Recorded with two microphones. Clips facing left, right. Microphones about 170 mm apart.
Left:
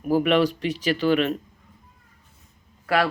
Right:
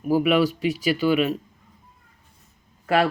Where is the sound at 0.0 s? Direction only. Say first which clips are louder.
Even; 5° right (ahead or behind).